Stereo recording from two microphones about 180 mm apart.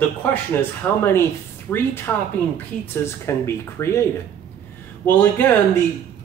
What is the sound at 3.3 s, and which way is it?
Speech, 15° left (ahead or behind).